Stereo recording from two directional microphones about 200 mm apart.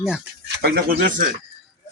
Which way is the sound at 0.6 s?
45° right (ahead or behind).